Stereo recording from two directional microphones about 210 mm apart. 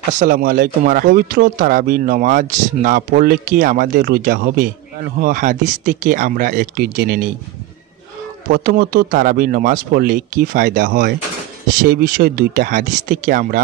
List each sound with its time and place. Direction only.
0.2 s speech: 45° right (ahead or behind)
8.5 s speech: 45° right (ahead or behind)